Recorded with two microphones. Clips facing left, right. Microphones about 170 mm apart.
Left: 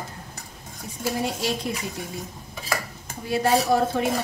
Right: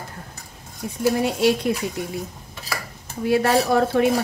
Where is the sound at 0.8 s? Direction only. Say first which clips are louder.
Right 9 dB; 70° right (ahead or behind).